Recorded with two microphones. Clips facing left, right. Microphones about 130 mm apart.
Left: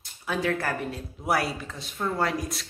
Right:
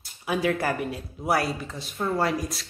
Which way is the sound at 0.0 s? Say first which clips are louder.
Right 3 dB; 10° right (ahead or behind).